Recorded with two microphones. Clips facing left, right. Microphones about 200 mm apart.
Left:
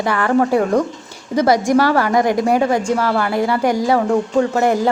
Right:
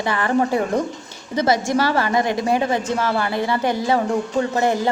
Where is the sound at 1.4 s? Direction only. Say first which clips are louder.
Left 5 dB; 15° left (ahead or behind).